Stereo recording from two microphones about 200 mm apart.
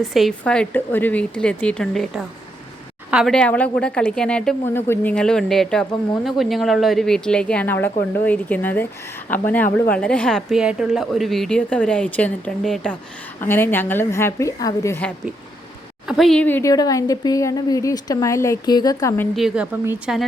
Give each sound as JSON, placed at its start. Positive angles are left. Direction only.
{"t": 0.0, "sound": "a woman's voice", "side_deg": 0}
{"t": 16.0, "sound": "speech", "side_deg": 0}
{"t": 19.4, "sound": "a woman's voice", "side_deg": 0}